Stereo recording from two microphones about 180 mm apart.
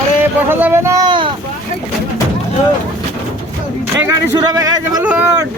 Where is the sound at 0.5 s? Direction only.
10° right (ahead or behind).